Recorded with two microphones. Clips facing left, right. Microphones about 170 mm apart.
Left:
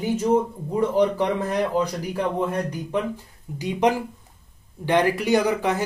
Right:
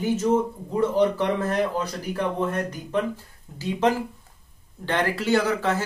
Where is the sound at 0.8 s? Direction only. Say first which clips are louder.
Left 1 dB; 15° left (ahead or behind).